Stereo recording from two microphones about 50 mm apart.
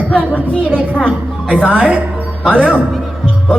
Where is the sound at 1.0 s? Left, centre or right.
Left.